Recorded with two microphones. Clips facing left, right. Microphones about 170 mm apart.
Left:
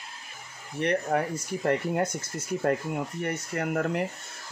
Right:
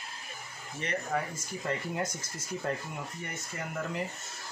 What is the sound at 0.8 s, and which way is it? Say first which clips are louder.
Speech: left 7 dB; 60° left (ahead or behind).